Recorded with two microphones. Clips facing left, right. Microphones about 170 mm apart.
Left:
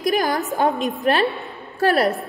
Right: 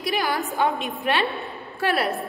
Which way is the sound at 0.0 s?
45° left (ahead or behind).